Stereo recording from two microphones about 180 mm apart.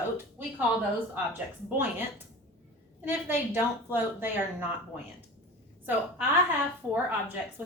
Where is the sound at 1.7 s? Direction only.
10° right (ahead or behind).